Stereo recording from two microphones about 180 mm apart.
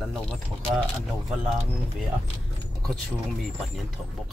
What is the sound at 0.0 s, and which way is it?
Speech, 5° left (ahead or behind).